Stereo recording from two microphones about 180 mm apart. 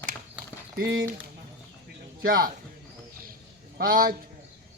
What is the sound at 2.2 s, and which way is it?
Speech, 55° right (ahead or behind).